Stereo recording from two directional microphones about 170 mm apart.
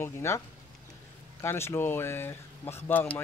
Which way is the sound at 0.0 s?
15° left (ahead or behind).